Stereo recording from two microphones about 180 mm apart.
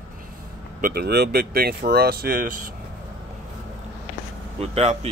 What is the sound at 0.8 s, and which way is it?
Speech, 60° right (ahead or behind).